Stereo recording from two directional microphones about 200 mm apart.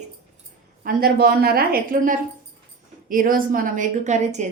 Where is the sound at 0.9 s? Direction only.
50° right (ahead or behind).